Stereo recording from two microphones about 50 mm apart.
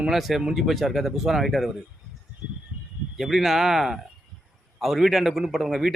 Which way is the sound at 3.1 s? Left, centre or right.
Centre.